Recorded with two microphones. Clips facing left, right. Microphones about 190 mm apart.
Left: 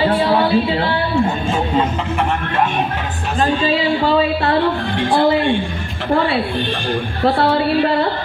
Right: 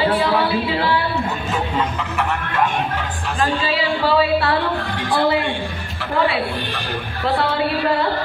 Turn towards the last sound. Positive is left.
turn(degrees=35)  # may be behind; listen again after turning